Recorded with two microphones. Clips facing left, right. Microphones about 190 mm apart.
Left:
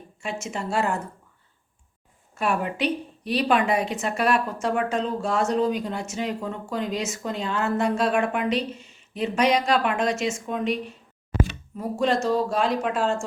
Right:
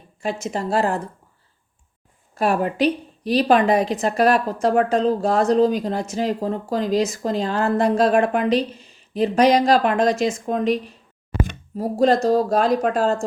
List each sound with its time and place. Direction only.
0.2 s speech: 35° right (ahead or behind)
2.4 s speech: 35° right (ahead or behind)